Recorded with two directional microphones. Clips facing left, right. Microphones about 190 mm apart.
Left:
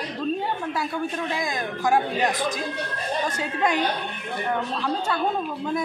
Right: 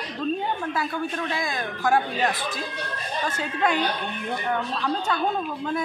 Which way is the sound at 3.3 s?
10° left (ahead or behind).